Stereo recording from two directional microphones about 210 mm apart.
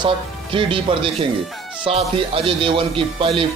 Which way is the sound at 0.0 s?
25° right (ahead or behind).